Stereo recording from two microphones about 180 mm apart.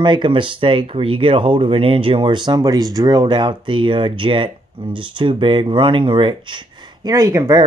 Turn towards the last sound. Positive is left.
turn(degrees=-15)  # may be behind; listen again after turning